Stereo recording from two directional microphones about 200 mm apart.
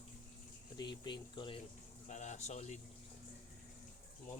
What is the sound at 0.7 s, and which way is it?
Speech, 20° left (ahead or behind).